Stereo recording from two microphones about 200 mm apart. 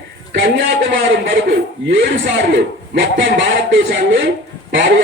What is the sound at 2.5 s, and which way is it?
A man's voice, 65° right (ahead or behind).